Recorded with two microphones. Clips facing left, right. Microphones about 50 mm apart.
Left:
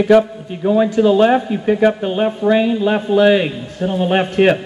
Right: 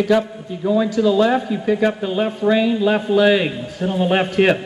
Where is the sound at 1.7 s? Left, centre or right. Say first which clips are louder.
Left 4 dB; left.